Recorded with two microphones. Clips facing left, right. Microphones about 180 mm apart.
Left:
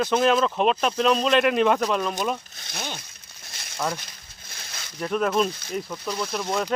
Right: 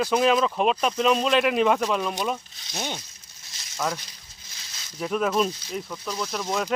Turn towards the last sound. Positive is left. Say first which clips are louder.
# left 1 dB
turn(degrees=0)  # may be behind; listen again after turning